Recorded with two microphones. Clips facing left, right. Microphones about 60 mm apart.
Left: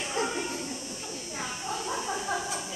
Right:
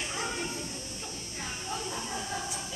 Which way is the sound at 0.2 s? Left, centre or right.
Centre.